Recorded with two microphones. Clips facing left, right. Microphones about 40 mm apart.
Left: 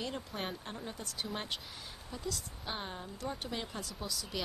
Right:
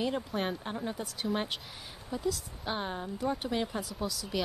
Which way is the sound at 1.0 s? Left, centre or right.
Centre.